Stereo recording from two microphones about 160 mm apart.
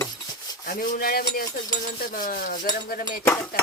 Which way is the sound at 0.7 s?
60° left (ahead or behind).